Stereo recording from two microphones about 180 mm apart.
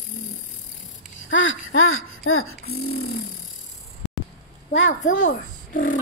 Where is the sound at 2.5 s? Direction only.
60° left (ahead or behind).